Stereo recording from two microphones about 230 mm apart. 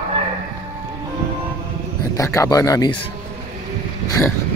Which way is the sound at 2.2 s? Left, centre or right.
Centre.